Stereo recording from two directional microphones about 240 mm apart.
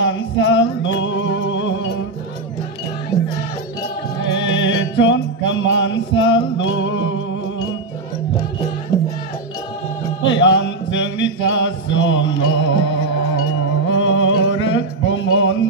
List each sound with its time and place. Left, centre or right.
0.0 s music: left
4.3 s music: left
10.2 s mantra: left
13.4 s music: left